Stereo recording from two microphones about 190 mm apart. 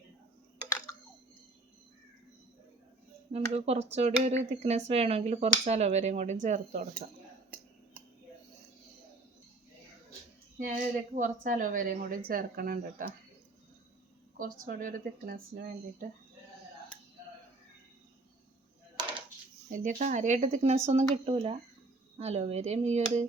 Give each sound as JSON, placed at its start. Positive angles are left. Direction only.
{"t": 3.3, "sound": "speech", "side_deg": -35}
{"t": 11.1, "sound": "speech", "side_deg": -40}
{"t": 14.3, "sound": "speech", "side_deg": -45}
{"t": 19.6, "sound": "speech", "side_deg": -50}